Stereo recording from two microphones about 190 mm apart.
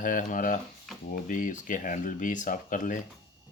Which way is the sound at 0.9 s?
Centre (ahead or behind).